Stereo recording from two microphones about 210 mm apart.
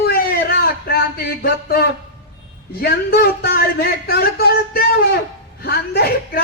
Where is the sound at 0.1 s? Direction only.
45° left (ahead or behind).